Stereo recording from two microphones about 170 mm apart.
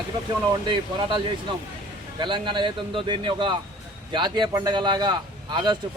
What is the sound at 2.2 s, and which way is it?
A man's voice, 30° right (ahead or behind).